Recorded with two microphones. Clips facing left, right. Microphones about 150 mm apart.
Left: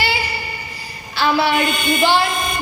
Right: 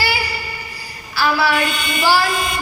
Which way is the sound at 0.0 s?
25° left (ahead or behind).